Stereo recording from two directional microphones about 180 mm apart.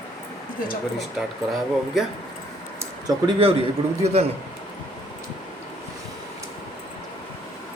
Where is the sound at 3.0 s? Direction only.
30° right (ahead or behind).